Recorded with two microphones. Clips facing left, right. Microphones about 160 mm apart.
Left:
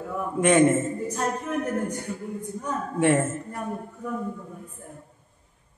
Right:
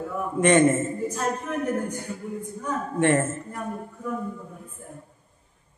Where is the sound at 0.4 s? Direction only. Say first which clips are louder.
Even; 5° left (ahead or behind).